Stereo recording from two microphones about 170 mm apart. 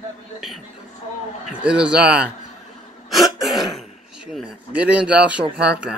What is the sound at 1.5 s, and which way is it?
Speech, 5° right (ahead or behind).